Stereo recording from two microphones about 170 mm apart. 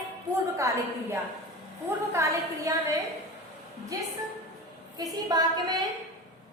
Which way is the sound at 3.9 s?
20° right (ahead or behind).